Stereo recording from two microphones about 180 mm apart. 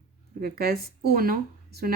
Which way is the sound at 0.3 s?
60° right (ahead or behind).